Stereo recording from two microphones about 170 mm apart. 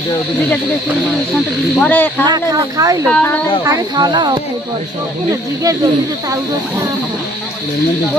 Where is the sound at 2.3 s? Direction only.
20° right (ahead or behind).